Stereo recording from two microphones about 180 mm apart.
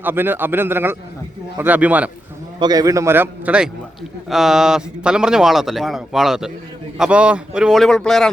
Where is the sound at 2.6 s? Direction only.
20° right (ahead or behind); by 8.3 s centre (ahead or behind).